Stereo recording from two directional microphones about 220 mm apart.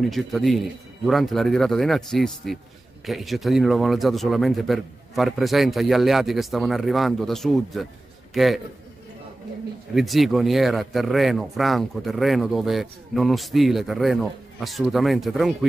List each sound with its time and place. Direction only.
0.0 s speech: centre (ahead or behind)
9.9 s speech: centre (ahead or behind)